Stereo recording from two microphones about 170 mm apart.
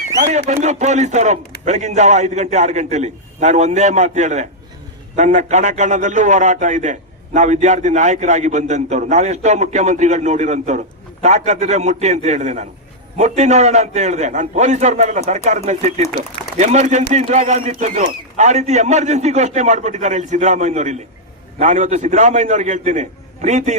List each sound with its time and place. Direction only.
0.2 s a man's voice: 45° right (ahead or behind)